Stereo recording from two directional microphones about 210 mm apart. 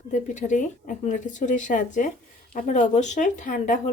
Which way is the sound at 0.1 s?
35° left (ahead or behind).